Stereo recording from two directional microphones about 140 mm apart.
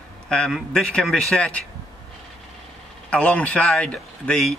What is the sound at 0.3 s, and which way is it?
Speech, 5° left (ahead or behind).